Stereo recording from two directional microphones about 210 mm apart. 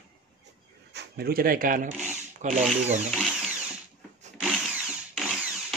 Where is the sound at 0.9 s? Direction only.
50° right (ahead or behind); by 3.0 s 35° right (ahead or behind).